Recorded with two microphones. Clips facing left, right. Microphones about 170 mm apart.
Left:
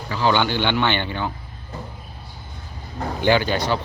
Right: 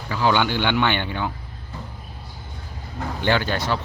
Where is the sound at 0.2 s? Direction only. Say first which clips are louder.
Left 1 dB; 5° right (ahead or behind).